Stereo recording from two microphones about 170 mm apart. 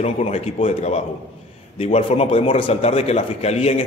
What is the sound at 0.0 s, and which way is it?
A man's voice, 40° left (ahead or behind).